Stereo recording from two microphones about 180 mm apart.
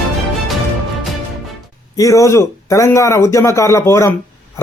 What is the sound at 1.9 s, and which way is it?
A man's voice, 15° left (ahead or behind).